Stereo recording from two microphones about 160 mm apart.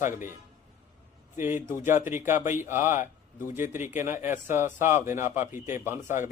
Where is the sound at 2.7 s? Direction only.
15° right (ahead or behind).